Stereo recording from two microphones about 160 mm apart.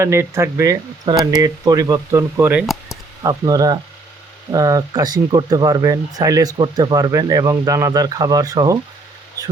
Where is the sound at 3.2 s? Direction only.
20° right (ahead or behind).